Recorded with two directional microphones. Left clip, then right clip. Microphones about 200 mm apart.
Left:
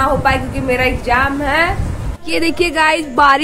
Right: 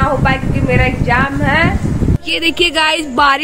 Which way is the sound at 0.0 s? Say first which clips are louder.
Left 1 dB; 10° left (ahead or behind).